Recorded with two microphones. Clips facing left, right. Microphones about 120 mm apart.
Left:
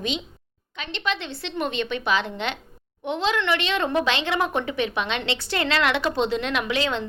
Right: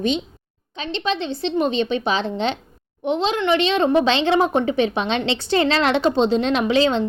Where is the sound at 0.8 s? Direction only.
25° right (ahead or behind).